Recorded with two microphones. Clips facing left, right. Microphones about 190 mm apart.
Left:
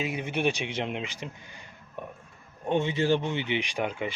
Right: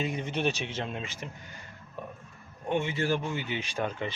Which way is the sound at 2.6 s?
20° left (ahead or behind).